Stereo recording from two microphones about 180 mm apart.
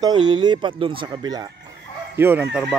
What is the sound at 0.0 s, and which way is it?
Speech, 25° right (ahead or behind).